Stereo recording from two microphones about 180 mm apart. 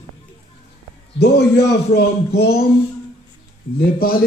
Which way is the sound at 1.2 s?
65° left (ahead or behind).